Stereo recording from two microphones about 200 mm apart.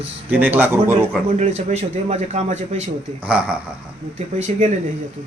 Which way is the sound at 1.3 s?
35° right (ahead or behind).